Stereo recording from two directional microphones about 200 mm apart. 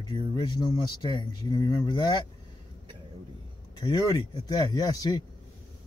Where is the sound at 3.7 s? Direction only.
20° left (ahead or behind).